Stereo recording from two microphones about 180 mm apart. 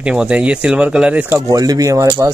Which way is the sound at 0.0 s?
5° right (ahead or behind).